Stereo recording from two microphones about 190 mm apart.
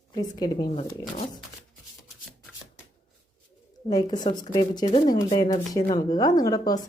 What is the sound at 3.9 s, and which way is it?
A woman's voice, 20° left (ahead or behind).